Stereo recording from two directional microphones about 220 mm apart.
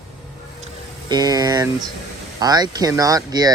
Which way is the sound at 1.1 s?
15° right (ahead or behind).